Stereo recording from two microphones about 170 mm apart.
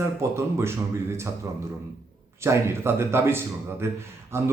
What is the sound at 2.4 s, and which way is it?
Speech, 15° right (ahead or behind).